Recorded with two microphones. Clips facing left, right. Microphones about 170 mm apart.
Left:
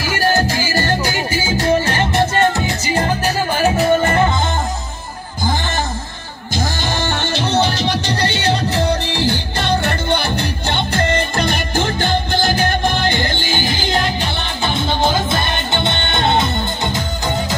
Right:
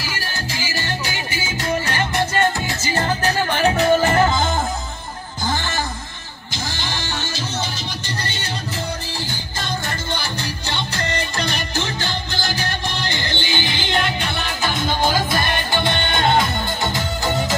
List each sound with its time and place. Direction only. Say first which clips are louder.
0.0 s music: left 12 dB; 50° left (ahead or behind); by 4.3 s centre (ahead or behind)
6.5 s music: left 7 dB; 50° left (ahead or behind); by 17.6 s 20° left (ahead or behind)